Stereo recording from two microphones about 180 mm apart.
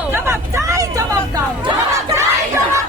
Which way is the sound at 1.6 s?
15° right (ahead or behind).